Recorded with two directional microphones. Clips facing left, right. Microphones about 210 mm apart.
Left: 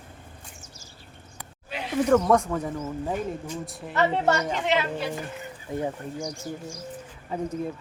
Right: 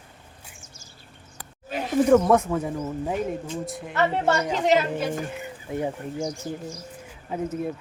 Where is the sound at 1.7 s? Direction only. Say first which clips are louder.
Right 4 dB; 45° right (ahead or behind).